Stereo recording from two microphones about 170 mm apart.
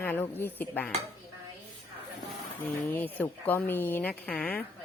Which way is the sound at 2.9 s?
10° left (ahead or behind).